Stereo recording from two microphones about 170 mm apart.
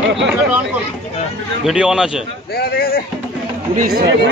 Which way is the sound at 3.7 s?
65° right (ahead or behind).